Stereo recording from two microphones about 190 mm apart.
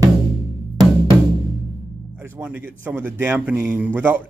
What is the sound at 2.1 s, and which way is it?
Music, 10° right (ahead or behind).